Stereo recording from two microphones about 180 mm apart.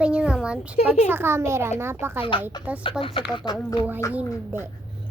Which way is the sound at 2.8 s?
30° left (ahead or behind).